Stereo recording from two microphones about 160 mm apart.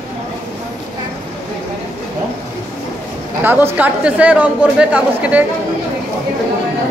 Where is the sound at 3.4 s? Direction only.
15° right (ahead or behind).